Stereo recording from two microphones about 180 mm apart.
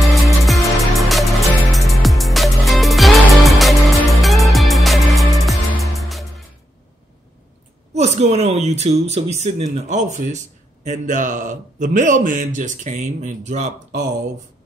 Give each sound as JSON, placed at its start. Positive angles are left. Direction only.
{"t": 0.1, "sound": "music", "side_deg": 0}
{"t": 7.9, "sound": "speech", "side_deg": -40}